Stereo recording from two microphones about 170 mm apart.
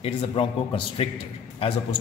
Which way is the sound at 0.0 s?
30° left (ahead or behind).